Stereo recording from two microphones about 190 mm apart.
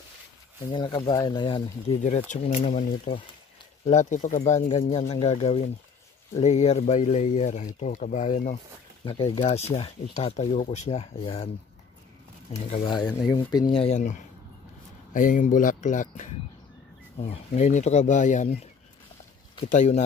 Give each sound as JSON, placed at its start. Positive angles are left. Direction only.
{"t": 0.7, "sound": "speech", "side_deg": 25}
{"t": 2.0, "sound": "speech", "side_deg": 35}
{"t": 4.6, "sound": "speech", "side_deg": 30}
{"t": 9.0, "sound": "speech", "side_deg": 25}
{"t": 13.3, "sound": "speech", "side_deg": 20}
{"t": 15.1, "sound": "speech", "side_deg": 45}
{"t": 19.7, "sound": "speech", "side_deg": 40}